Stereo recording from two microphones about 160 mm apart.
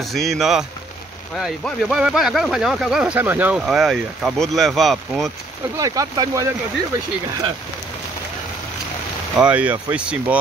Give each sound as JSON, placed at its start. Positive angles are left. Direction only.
{"t": 0.0, "sound": "speech", "side_deg": 0}
{"t": 5.8, "sound": "speech", "side_deg": -20}
{"t": 9.4, "sound": "speech", "side_deg": -10}